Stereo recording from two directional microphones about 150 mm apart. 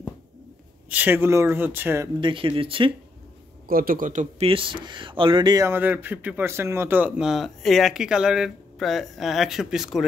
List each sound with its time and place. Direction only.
0.8 s speech: 10° right (ahead or behind)
2.1 s speech: 35° right (ahead or behind)
3.6 s speech: 70° right (ahead or behind)
4.5 s speech: 35° right (ahead or behind)
5.7 s speech: 15° right (ahead or behind)